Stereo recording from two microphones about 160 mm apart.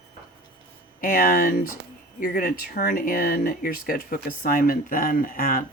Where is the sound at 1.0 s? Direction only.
65° left (ahead or behind).